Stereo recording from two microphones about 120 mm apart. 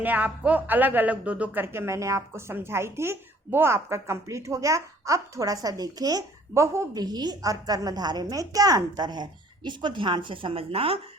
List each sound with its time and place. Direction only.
0.0 s speech: 15° right (ahead or behind); by 11.0 s 50° right (ahead or behind)